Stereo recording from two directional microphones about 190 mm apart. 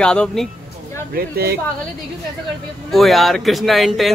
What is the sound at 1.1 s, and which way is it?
Speech, 50° right (ahead or behind).